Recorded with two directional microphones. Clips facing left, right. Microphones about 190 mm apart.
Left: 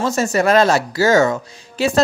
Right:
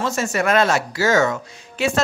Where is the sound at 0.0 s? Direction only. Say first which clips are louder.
Left 4 dB; 35° left (ahead or behind).